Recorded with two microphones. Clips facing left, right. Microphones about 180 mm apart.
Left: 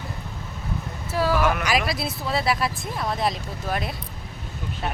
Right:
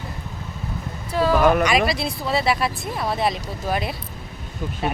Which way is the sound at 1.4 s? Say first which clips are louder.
Right 6 dB; 35° right (ahead or behind).